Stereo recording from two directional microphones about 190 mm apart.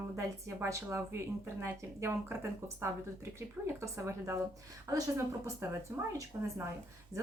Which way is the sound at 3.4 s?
15° right (ahead or behind).